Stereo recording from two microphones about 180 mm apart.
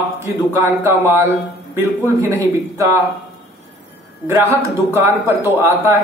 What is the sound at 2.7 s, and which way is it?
Speech, 15° right (ahead or behind).